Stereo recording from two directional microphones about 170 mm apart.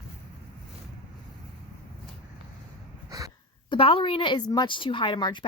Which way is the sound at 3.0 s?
20° right (ahead or behind).